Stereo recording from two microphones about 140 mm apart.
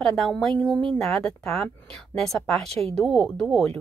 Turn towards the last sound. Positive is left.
turn(degrees=10)  # may be behind; listen again after turning